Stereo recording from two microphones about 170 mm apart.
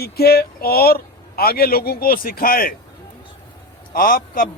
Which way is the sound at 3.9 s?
55° left (ahead or behind).